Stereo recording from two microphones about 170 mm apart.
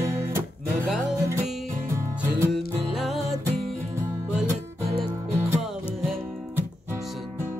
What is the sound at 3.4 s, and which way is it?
Music, 15° right (ahead or behind).